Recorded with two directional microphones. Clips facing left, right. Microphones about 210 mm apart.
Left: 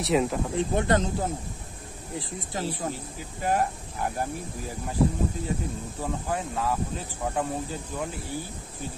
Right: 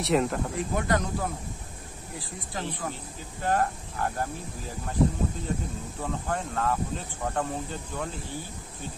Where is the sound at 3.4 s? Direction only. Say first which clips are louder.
Even; 15° left (ahead or behind).